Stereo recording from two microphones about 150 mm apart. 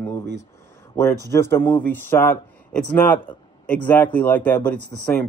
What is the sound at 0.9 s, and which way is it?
A man's voice, 20° left (ahead or behind).